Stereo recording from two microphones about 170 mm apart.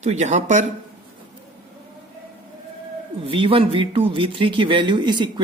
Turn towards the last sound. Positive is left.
turn(degrees=-25)  # may be behind; listen again after turning